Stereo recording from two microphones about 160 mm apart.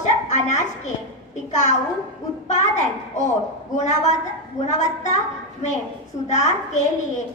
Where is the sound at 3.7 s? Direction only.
45° left (ahead or behind).